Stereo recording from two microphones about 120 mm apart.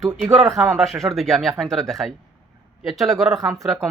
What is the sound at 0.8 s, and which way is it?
Speech, centre (ahead or behind).